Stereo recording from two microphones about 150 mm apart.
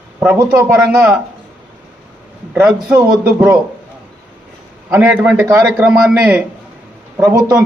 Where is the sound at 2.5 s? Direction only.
10° right (ahead or behind).